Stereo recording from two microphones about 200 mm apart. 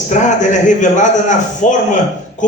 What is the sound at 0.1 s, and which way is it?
A man's voice, 40° left (ahead or behind).